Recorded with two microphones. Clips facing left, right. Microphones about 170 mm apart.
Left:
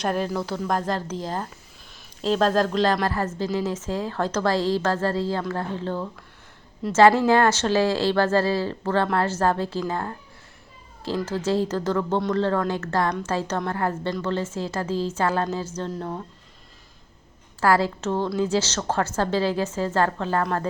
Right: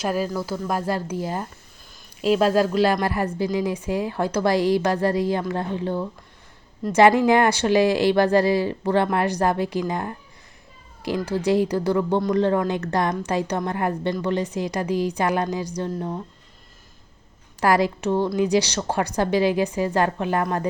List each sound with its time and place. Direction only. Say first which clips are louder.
0.0 s a woman's voice: right 1 dB; 5° right (ahead or behind)
17.6 s a woman's voice: right 1 dB; 15° right (ahead or behind)